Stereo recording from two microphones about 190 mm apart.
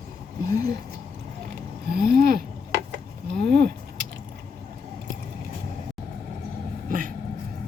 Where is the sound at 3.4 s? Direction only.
60° right (ahead or behind).